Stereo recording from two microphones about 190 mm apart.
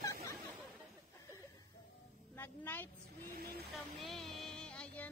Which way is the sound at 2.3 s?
10° left (ahead or behind).